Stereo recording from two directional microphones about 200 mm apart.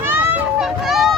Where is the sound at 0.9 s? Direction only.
Centre (ahead or behind).